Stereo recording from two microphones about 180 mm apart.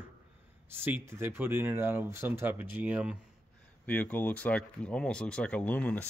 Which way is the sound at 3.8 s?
10° left (ahead or behind).